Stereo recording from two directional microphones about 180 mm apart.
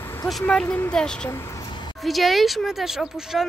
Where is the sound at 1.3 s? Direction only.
15° left (ahead or behind).